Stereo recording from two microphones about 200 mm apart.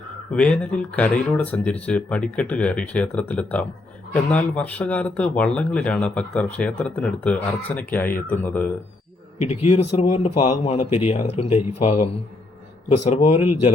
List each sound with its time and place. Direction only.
0.3 s speech: 5° left (ahead or behind)
9.4 s a man's voice: 35° left (ahead or behind)
13.1 s a man's voice: 30° left (ahead or behind)